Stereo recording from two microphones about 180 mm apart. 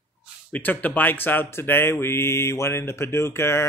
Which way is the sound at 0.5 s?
10° left (ahead or behind).